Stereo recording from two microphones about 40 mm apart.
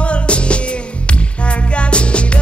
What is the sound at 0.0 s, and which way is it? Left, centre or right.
Music, left.